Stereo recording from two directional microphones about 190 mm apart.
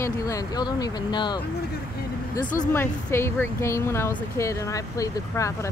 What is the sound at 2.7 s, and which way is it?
Speech, 10° left (ahead or behind).